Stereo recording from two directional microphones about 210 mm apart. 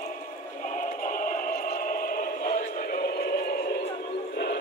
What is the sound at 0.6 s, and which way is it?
Music, 35° left (ahead or behind).